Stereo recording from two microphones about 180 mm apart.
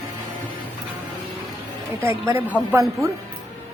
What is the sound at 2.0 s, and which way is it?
Speech, 15° right (ahead or behind).